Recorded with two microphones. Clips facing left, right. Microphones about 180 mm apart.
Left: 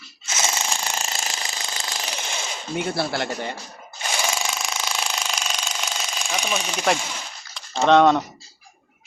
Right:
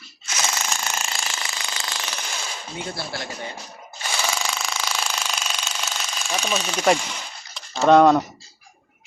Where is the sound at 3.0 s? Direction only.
65° left (ahead or behind).